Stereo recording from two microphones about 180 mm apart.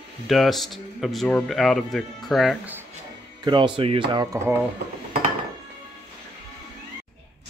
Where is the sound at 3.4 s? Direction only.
25° right (ahead or behind).